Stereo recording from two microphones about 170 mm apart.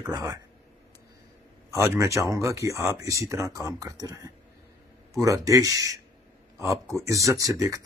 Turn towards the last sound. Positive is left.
turn(degrees=-20)  # may be behind; listen again after turning